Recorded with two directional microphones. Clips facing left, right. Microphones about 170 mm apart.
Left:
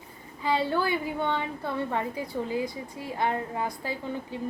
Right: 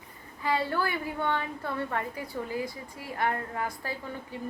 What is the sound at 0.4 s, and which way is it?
A woman's voice, 15° left (ahead or behind).